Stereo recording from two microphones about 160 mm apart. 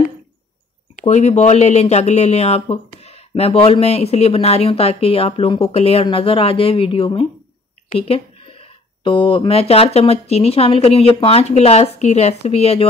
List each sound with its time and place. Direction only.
1.0 s speech: 45° left (ahead or behind)